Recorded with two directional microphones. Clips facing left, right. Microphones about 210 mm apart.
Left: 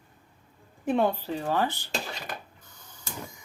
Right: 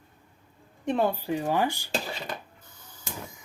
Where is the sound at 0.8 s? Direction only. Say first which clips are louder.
Left 1 dB; centre (ahead or behind).